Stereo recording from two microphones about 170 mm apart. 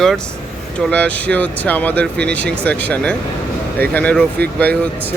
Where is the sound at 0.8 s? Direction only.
5° left (ahead or behind).